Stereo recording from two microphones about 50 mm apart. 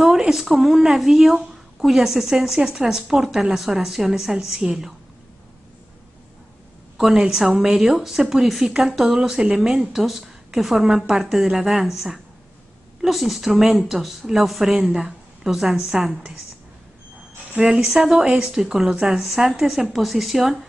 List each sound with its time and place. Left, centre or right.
0.0 s a woman's voice: centre
1.4 s a sound: centre
2.0 s a woman's voice: centre
7.0 s a woman's voice: centre
15.8 s speech: right
17.6 s speech: centre
18.5 s a woman's voice: centre
18.9 s a woman's voice: right; by 20.5 s centre